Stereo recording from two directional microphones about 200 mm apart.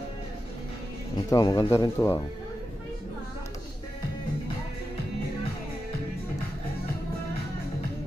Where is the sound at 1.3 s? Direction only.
20° left (ahead or behind).